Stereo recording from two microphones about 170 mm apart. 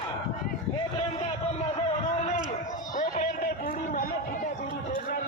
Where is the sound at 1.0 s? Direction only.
40° left (ahead or behind).